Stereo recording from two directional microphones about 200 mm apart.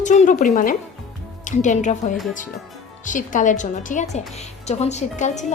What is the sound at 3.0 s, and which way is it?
A woman's voice, 40° left (ahead or behind).